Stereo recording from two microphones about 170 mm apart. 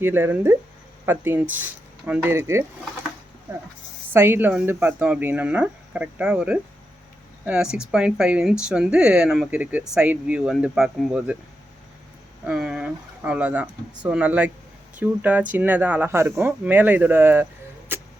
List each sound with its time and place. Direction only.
0.0 s speech: 10° right (ahead or behind)
4.1 s speech: 15° right (ahead or behind)
12.5 s speech: 5° right (ahead or behind)